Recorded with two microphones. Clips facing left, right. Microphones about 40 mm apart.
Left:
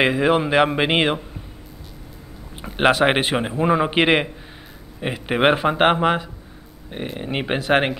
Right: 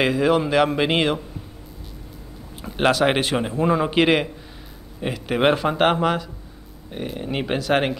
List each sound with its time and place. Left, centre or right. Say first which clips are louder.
0.0 s a man's voice: left 1 dB; left
2.6 s a man's voice: left 2 dB; left